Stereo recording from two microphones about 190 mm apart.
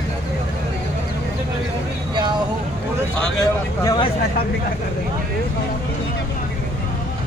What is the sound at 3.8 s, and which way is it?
Vehicle, 25° left (ahead or behind).